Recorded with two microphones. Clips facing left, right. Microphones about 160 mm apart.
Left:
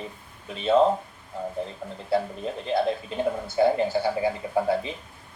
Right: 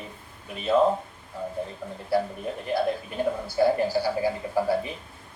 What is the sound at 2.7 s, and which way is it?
Speech, 55° left (ahead or behind).